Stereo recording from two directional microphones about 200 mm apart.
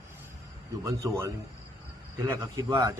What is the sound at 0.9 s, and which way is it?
Speech, 15° right (ahead or behind).